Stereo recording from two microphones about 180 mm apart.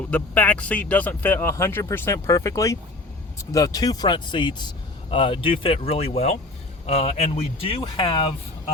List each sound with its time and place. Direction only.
0.1 s a man's voice: 10° left (ahead or behind); by 8.3 s 30° left (ahead or behind)